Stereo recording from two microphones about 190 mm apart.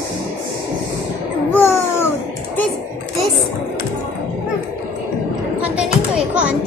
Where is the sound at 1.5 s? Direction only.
10° left (ahead or behind).